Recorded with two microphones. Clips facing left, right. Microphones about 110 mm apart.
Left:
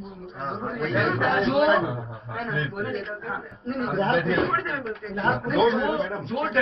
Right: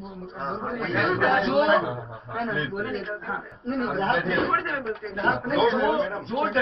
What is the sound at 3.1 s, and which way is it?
Speech, centre (ahead or behind).